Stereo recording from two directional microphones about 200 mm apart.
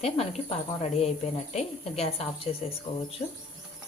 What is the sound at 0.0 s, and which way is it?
A woman's voice, 30° left (ahead or behind).